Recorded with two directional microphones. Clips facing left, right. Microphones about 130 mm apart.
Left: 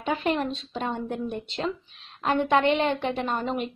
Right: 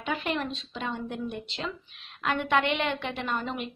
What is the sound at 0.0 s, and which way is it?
A woman's voice, 35° left (ahead or behind).